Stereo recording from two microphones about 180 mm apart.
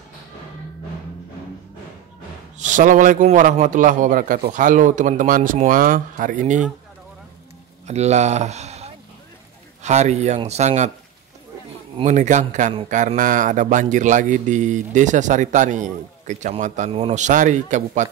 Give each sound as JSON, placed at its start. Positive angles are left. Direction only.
{"t": 2.6, "sound": "a man's voice", "side_deg": -45}
{"t": 7.8, "sound": "a man's voice", "side_deg": -40}
{"t": 12.0, "sound": "a man's voice", "side_deg": -40}